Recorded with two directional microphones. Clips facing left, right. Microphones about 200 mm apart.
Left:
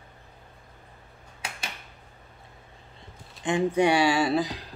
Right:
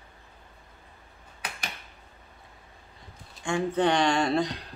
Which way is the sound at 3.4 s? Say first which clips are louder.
Left 3 dB; 20° left (ahead or behind).